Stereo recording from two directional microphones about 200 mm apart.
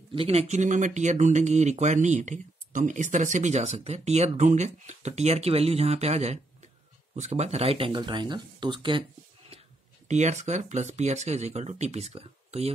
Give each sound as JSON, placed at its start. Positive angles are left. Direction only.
{"t": 0.1, "sound": "speech", "side_deg": -30}
{"t": 10.0, "sound": "speech", "side_deg": -35}